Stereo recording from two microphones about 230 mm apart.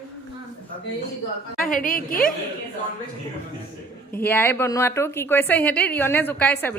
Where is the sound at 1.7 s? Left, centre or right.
Left.